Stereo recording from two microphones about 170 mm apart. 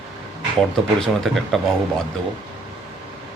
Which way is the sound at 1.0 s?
Centre (ahead or behind).